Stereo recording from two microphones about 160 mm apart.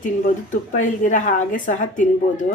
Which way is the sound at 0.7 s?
50° left (ahead or behind).